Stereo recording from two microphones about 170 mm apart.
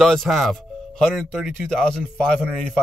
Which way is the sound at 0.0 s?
Centre (ahead or behind).